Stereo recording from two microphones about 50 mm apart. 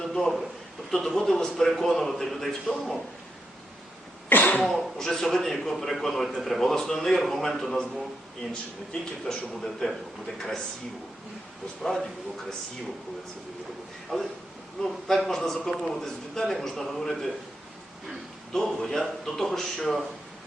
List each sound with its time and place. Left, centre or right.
0.0 s a sound: centre
0.9 s a man's voice: centre
4.3 s cough: left
4.6 s a man's voice: centre
9.6 s a man's voice: centre
11.8 s a man's voice: centre
14.1 s a man's voice: centre
18.5 s a man's voice: centre